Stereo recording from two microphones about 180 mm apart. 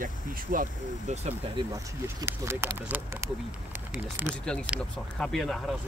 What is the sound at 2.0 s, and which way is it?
Speech, 15° right (ahead or behind).